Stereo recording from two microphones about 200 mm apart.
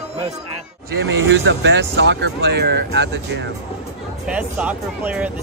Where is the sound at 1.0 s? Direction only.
65° right (ahead or behind).